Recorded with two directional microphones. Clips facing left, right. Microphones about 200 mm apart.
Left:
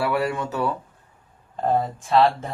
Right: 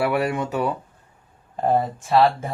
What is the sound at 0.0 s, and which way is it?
Speech, 15° right (ahead or behind).